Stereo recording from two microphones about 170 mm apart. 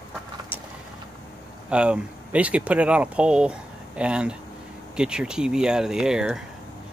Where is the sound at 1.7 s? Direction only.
5° right (ahead or behind).